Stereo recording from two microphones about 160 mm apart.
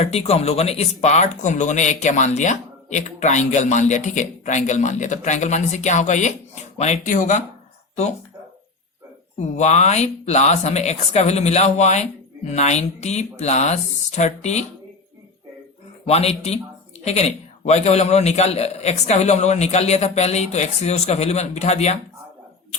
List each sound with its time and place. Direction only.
0.0 s speech: 40° left (ahead or behind)
9.4 s speech: 45° left (ahead or behind)
16.0 s speech: 40° left (ahead or behind)